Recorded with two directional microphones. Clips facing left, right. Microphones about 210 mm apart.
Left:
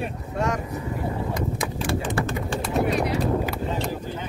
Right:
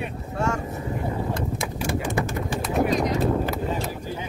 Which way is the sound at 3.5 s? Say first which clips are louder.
Even; 5° right (ahead or behind).